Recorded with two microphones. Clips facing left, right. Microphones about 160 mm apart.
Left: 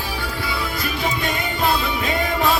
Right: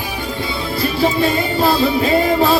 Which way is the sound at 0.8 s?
30° right (ahead or behind).